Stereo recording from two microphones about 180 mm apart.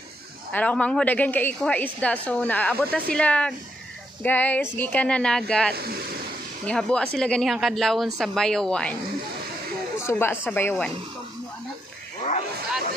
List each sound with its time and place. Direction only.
0.5 s speech: 10° left (ahead or behind)
5.8 s speech: 60° right (ahead or behind)
6.6 s speech: 5° left (ahead or behind)
9.9 s speech: 15° left (ahead or behind)